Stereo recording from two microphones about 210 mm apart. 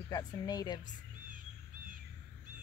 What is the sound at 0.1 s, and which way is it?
Speech, 20° left (ahead or behind).